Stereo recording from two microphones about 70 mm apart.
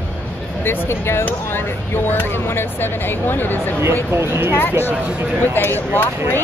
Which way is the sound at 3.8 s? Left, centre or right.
Right.